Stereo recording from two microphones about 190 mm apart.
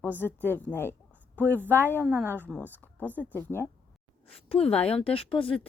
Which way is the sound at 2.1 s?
10° right (ahead or behind).